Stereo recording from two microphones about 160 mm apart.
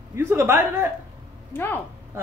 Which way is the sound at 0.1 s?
15° right (ahead or behind).